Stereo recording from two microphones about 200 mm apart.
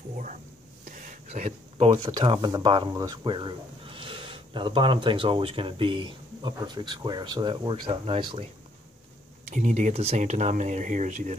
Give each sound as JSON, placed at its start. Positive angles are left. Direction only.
{"t": 0.8, "sound": "speech", "side_deg": -40}
{"t": 9.5, "sound": "speech", "side_deg": -35}